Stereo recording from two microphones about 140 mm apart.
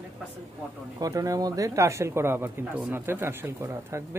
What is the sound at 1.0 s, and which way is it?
Speech, 25° right (ahead or behind).